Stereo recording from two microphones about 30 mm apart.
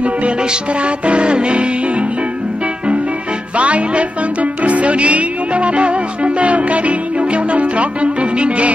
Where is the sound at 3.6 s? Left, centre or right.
Right.